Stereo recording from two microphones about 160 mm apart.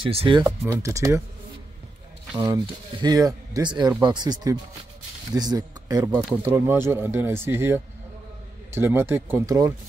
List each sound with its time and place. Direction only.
0.0 s speech: 35° right (ahead or behind)
0.4 s speech: 15° right (ahead or behind)
2.3 s speech: 20° right (ahead or behind)